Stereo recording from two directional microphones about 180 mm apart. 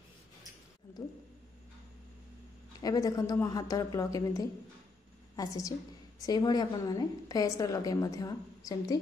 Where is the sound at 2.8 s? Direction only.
20° left (ahead or behind).